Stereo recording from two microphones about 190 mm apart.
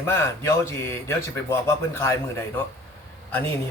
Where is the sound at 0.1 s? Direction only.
15° left (ahead or behind).